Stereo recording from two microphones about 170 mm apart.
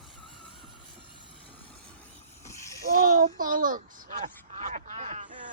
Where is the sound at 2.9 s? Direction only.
55° right (ahead or behind).